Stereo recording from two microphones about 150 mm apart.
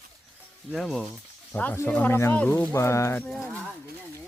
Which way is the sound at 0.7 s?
Centre (ahead or behind).